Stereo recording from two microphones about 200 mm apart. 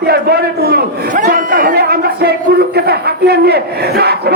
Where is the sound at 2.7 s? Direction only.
55° right (ahead or behind).